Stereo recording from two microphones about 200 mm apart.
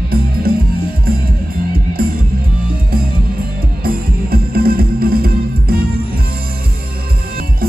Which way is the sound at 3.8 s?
50° right (ahead or behind).